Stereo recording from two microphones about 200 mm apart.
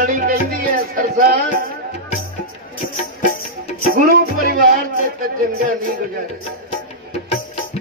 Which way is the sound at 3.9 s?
45° right (ahead or behind).